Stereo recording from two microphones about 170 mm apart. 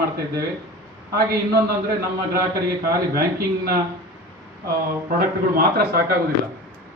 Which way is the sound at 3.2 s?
65° right (ahead or behind).